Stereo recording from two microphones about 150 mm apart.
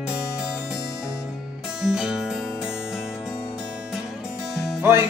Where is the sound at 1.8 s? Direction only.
5° right (ahead or behind).